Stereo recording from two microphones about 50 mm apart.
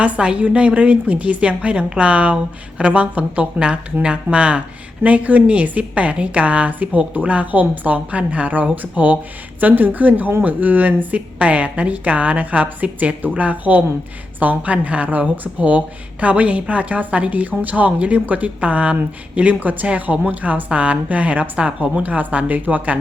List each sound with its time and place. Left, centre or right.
0.0 s a woman's voice: right